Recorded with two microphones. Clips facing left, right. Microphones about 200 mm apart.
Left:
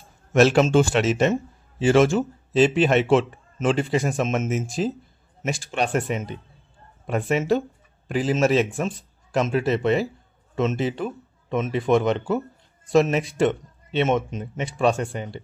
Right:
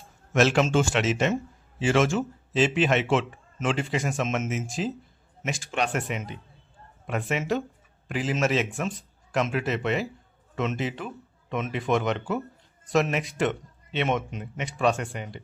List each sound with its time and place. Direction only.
0.3 s speech: 35° left (ahead or behind)